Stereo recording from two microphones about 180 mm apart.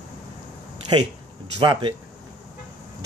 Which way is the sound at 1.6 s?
25° right (ahead or behind).